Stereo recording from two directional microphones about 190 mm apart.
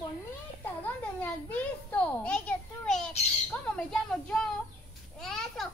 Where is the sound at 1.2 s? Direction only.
10° left (ahead or behind).